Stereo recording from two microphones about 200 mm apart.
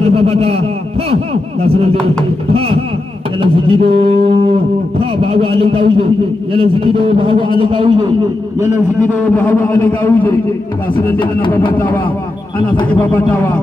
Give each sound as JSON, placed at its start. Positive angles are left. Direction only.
{"t": 0.0, "sound": "a man's voice", "side_deg": -30}
{"t": 9.3, "sound": "a man's voice", "side_deg": 10}
{"t": 11.8, "sound": "a man's voice", "side_deg": 10}
{"t": 13.1, "sound": "a man's voice", "side_deg": 10}